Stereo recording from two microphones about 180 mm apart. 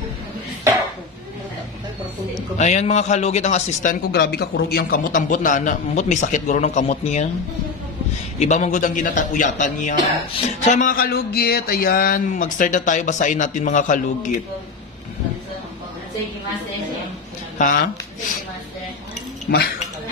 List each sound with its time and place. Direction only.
2.5 s a man's voice: 40° left (ahead or behind)
8.4 s a sound: 40° left (ahead or behind)
17.6 s speech: 50° left (ahead or behind)
19.5 s speech: 55° left (ahead or behind)